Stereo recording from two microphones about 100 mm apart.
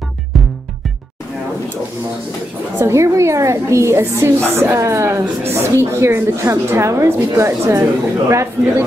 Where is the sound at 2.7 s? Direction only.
30° right (ahead or behind).